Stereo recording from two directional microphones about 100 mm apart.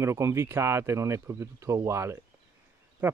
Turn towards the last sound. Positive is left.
turn(degrees=-20)  # may be behind; listen again after turning